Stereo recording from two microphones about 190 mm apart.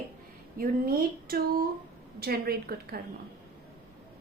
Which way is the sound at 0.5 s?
50° right (ahead or behind).